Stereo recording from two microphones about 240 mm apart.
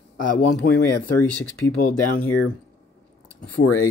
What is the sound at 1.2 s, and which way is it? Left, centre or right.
Speech, centre.